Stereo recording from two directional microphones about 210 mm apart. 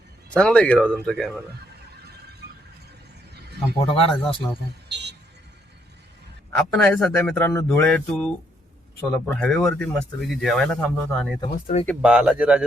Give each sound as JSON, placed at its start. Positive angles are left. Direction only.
{"t": 0.3, "sound": "speech", "side_deg": 5}
{"t": 3.9, "sound": "speech", "side_deg": 25}
{"t": 4.9, "sound": "music", "side_deg": -55}
{"t": 6.6, "sound": "speech", "side_deg": 5}
{"t": 11.5, "sound": "speech", "side_deg": 35}
{"t": 12.0, "sound": "speech", "side_deg": -5}